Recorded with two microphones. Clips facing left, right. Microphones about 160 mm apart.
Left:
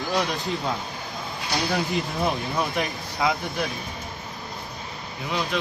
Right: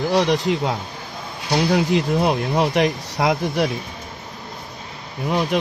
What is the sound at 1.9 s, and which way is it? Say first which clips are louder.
Speech: right 7 dB; 75° right (ahead or behind).